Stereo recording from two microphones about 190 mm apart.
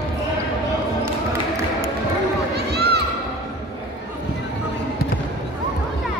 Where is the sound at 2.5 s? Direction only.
60° right (ahead or behind).